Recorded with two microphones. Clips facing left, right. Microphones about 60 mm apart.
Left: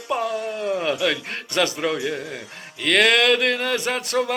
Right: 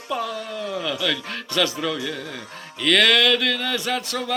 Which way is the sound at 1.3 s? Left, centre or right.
Left.